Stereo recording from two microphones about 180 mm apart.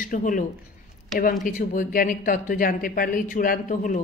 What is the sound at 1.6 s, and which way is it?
A woman's voice, 50° left (ahead or behind).